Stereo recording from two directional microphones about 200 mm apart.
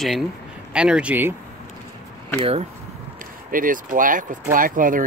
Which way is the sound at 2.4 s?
30° right (ahead or behind).